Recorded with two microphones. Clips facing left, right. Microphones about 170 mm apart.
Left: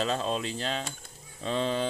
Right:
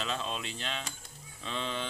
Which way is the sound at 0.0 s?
40° left (ahead or behind).